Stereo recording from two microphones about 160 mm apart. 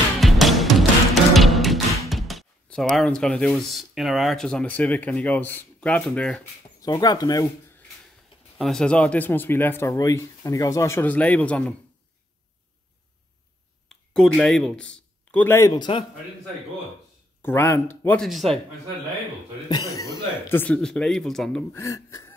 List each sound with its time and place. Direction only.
0.2 s music: centre (ahead or behind)
6.8 s speech: 25° left (ahead or behind)
8.5 s speech: centre (ahead or behind)
13.8 s speech: 5° left (ahead or behind); by 16.1 s 30° left (ahead or behind)
17.4 s speech: 15° left (ahead or behind)
18.2 s speech: centre (ahead or behind)
19.9 s speech: 20° left (ahead or behind); by 21.6 s 5° left (ahead or behind)
21.7 s speech: 20° left (ahead or behind)